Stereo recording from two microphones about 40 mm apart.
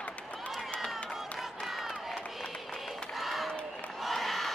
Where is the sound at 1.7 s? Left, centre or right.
Centre.